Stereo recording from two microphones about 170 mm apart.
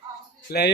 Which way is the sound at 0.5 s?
65° left (ahead or behind).